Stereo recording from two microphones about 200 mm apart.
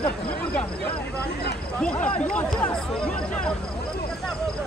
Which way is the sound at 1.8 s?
5° left (ahead or behind).